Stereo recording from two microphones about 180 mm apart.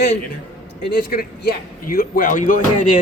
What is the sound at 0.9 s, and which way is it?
Speech, 60° left (ahead or behind).